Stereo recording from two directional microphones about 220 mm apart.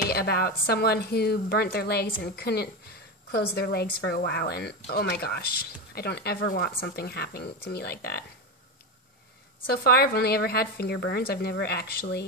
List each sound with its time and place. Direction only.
0.0 s a woman's voice: 45° left (ahead or behind)
9.7 s a woman's voice: 45° left (ahead or behind)